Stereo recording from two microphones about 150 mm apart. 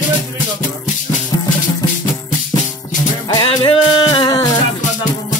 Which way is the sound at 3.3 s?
30° left (ahead or behind).